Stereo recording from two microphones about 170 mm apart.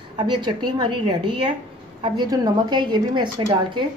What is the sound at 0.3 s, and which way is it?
A woman's voice, 25° right (ahead or behind).